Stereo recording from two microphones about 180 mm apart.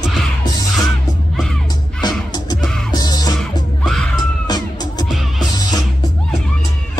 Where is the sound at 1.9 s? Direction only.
20° left (ahead or behind).